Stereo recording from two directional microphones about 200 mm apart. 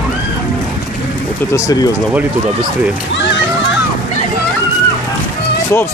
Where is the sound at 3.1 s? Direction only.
60° left (ahead or behind).